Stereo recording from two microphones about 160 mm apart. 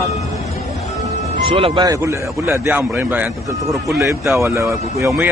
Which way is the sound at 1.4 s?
35° right (ahead or behind).